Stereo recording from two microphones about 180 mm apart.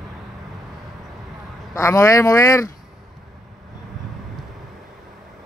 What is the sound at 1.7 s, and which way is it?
Speech, 15° left (ahead or behind).